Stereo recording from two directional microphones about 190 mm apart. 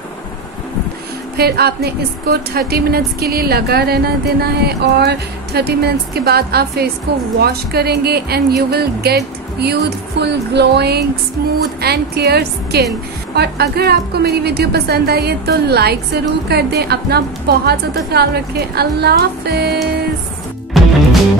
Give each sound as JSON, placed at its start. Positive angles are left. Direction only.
{"t": 1.3, "sound": "a woman's voice", "side_deg": -55}
{"t": 20.7, "sound": "music", "side_deg": 0}